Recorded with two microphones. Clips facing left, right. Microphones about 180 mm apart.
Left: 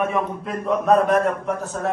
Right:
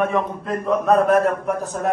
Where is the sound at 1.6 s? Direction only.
15° right (ahead or behind).